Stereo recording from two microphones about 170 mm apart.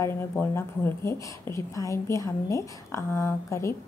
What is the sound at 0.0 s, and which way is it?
A woman's voice, 15° left (ahead or behind).